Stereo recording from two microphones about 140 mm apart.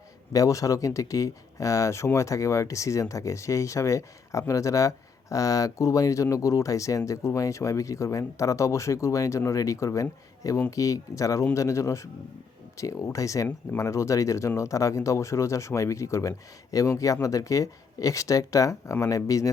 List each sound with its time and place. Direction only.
0.3 s speech: 25° left (ahead or behind)